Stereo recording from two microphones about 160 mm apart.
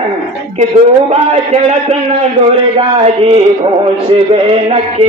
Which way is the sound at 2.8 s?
40° right (ahead or behind).